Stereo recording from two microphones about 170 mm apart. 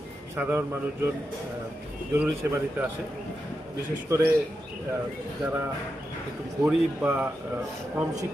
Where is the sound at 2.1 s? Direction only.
15° right (ahead or behind).